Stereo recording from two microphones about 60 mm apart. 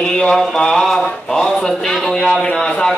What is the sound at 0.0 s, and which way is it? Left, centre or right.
Speech, centre.